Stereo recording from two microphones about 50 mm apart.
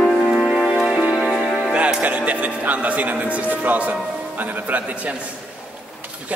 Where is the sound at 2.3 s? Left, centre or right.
Right.